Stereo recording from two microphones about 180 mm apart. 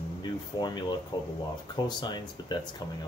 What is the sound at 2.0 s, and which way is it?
Speech, 25° left (ahead or behind).